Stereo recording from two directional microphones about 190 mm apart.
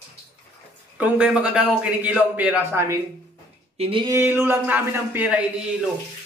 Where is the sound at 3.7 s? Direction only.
30° right (ahead or behind).